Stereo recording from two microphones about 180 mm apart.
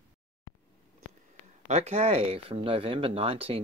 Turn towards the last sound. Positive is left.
turn(degrees=-30)  # may be behind; listen again after turning